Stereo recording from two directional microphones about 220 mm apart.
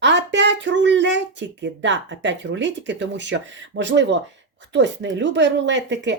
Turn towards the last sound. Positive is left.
turn(degrees=-55)  # may be behind; listen again after turning